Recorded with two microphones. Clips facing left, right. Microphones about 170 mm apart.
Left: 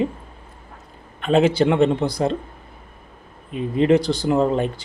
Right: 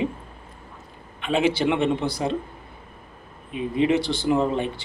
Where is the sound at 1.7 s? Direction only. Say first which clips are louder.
Left 5 dB; 35° left (ahead or behind).